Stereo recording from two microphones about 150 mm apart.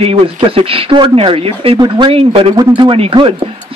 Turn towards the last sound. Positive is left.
turn(degrees=-35)  # may be behind; listen again after turning